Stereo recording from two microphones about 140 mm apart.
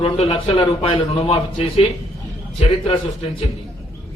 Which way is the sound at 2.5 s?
50° left (ahead or behind).